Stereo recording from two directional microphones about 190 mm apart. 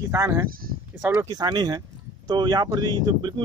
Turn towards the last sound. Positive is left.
turn(degrees=-20)  # may be behind; listen again after turning